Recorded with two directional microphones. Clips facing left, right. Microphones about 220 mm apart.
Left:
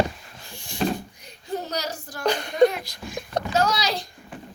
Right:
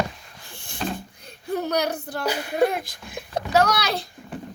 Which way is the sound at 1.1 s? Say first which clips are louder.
Right 3 dB; 60° right (ahead or behind).